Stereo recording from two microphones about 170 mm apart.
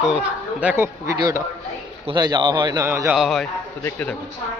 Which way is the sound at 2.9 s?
15° right (ahead or behind).